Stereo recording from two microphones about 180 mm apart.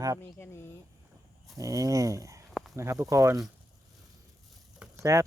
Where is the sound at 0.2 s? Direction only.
10° left (ahead or behind).